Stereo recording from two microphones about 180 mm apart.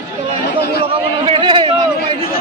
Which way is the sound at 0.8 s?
30° right (ahead or behind).